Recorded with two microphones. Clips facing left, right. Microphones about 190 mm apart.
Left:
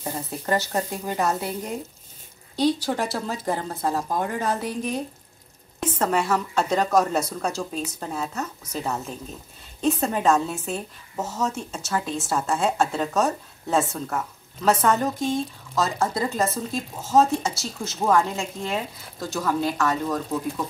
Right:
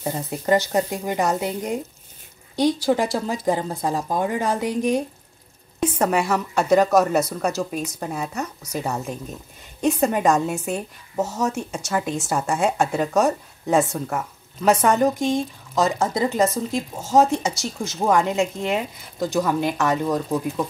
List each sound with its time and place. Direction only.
0.0 s a woman's voice: 15° right (ahead or behind)